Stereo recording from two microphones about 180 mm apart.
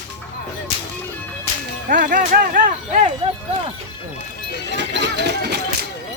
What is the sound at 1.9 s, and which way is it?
Speech, 50° right (ahead or behind).